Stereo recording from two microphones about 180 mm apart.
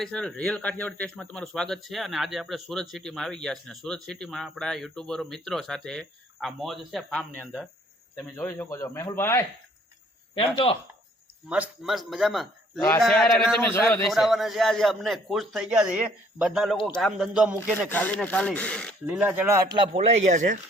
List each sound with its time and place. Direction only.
0.0 s speech: 5° left (ahead or behind)
11.4 s speech: 5° right (ahead or behind)
13.6 s speech: 15° left (ahead or behind)
14.1 s speech: centre (ahead or behind)
17.8 s speech: 10° left (ahead or behind)
19.0 s speech: 10° right (ahead or behind)
19.7 s speech: 30° right (ahead or behind)